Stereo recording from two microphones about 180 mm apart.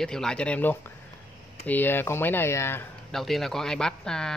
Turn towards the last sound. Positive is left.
turn(degrees=5)  # may be behind; listen again after turning